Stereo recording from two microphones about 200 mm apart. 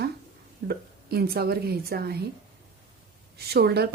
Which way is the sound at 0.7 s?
50° right (ahead or behind).